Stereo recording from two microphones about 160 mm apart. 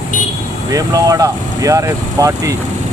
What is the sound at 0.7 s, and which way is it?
Speech, 20° right (ahead or behind).